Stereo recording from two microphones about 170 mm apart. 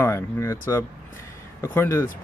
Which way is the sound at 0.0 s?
15° left (ahead or behind).